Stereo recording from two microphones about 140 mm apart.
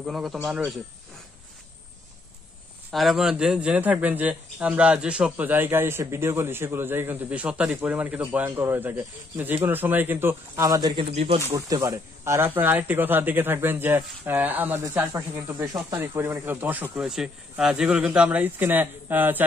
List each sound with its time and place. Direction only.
0.0 s speech: centre (ahead or behind)
2.9 s a man's voice: centre (ahead or behind); by 11.1 s 30° right (ahead or behind)
11.1 s speech: 50° right (ahead or behind)
11.5 s a man's voice: 25° right (ahead or behind)
14.8 s a man's voice: 25° right (ahead or behind)